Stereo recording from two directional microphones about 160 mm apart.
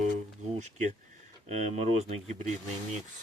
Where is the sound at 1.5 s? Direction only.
45° right (ahead or behind).